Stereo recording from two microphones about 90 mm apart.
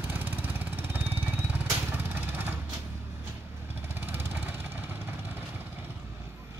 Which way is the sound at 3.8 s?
25° right (ahead or behind).